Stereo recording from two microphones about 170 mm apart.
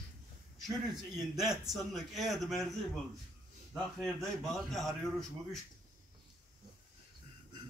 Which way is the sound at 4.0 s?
Centre (ahead or behind).